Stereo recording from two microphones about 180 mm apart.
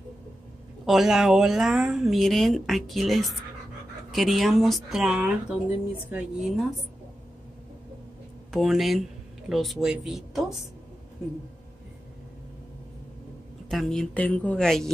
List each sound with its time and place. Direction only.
0.8 s a woman's voice: centre (ahead or behind)
8.5 s a woman's voice: centre (ahead or behind)
13.7 s a woman's voice: centre (ahead or behind)